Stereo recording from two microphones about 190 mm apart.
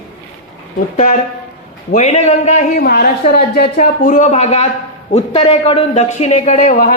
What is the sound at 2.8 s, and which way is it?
Speech, 55° left (ahead or behind).